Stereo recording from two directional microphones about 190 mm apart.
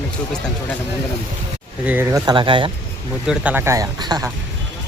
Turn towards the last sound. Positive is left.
turn(degrees=-20)  # may be behind; listen again after turning